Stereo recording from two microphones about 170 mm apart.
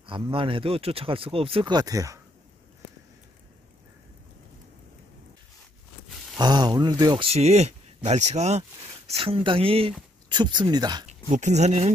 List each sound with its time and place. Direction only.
0.0 s speech: 30° right (ahead or behind)
6.3 s speech: 25° right (ahead or behind)
7.2 s speech: 40° right (ahead or behind)
11.1 s speech: 45° right (ahead or behind)